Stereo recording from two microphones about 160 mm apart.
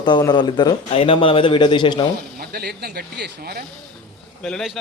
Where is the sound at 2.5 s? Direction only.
80° right.